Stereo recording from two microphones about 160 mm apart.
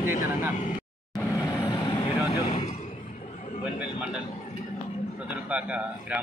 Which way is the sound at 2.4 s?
30° left (ahead or behind).